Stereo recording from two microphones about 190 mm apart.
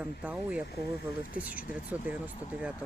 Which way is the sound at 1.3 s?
50° left (ahead or behind).